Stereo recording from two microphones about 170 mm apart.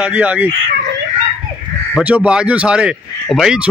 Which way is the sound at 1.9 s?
5° right (ahead or behind).